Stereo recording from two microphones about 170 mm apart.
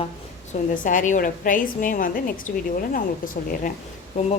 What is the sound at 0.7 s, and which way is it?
A woman's voice, 50° left (ahead or behind).